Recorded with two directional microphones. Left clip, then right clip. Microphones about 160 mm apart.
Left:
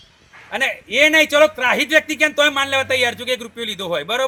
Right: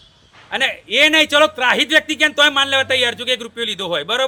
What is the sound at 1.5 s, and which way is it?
Speech, 30° right (ahead or behind).